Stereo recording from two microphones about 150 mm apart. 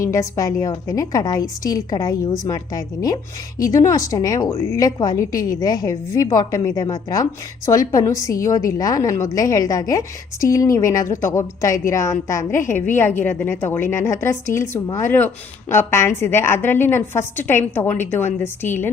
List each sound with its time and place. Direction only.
0.0 s a woman's voice: 20° left (ahead or behind)